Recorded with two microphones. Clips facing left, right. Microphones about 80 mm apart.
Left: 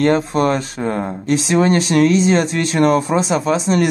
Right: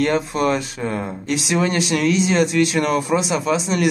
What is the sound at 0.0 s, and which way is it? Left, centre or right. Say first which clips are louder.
Speech: left 4 dB; left.